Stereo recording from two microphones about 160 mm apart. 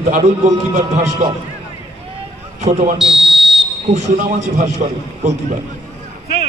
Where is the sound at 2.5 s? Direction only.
45° right (ahead or behind).